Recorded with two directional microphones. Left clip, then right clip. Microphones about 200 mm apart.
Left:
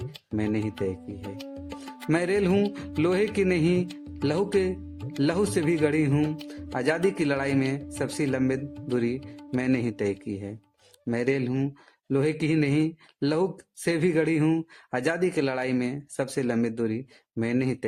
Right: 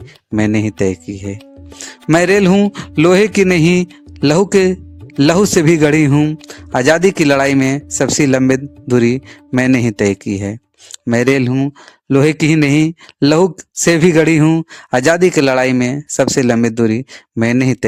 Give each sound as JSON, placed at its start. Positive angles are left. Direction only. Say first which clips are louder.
{"t": 0.3, "sound": "speech", "louder": "right 13 dB", "side_deg": -50}